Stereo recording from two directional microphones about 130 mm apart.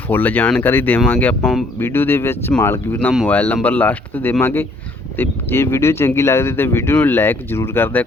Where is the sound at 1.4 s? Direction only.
Centre (ahead or behind).